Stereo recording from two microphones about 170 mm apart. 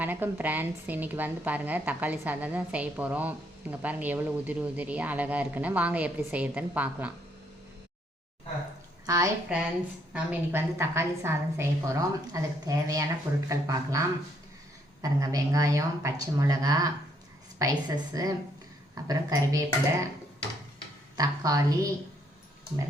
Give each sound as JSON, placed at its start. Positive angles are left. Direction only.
{"t": 0.0, "sound": "a woman's voice", "side_deg": -10}
{"t": 9.0, "sound": "a woman's voice", "side_deg": -20}
{"t": 9.5, "sound": "a woman's voice", "side_deg": -10}
{"t": 15.0, "sound": "a woman's voice", "side_deg": -20}
{"t": 21.2, "sound": "a woman's voice", "side_deg": -20}